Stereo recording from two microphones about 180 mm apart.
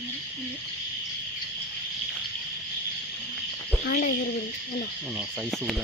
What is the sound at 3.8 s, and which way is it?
Speech, 50° left (ahead or behind).